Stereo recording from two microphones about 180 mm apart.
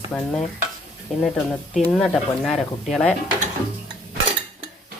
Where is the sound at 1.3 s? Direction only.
5° left (ahead or behind).